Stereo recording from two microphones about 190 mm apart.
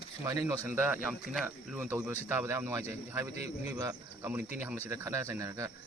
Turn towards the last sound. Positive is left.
turn(degrees=-15)  # may be behind; listen again after turning